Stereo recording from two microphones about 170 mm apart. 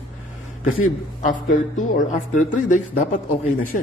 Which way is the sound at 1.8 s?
50° left (ahead or behind).